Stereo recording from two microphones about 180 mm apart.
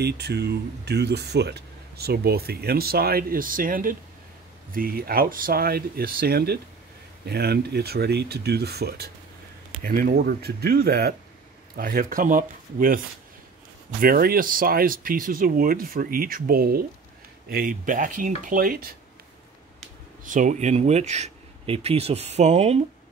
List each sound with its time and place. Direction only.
0.0 s speech: 65° right (ahead or behind)
11.7 s speech: 50° right (ahead or behind)
20.2 s speech: 45° right (ahead or behind)